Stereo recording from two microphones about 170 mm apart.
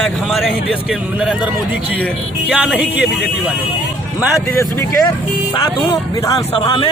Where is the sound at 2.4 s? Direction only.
5° right (ahead or behind).